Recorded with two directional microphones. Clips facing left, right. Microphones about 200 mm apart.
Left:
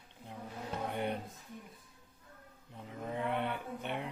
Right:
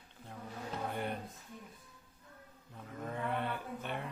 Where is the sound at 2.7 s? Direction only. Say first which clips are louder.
Left 2 dB; 20° left (ahead or behind).